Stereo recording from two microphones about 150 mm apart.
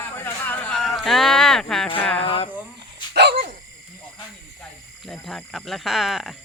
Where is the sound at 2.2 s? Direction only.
40° left (ahead or behind).